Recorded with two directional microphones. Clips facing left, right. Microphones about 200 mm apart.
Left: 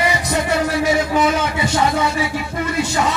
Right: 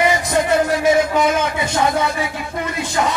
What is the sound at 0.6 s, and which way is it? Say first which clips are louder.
Speech: right 2 dB; 50° right (ahead or behind).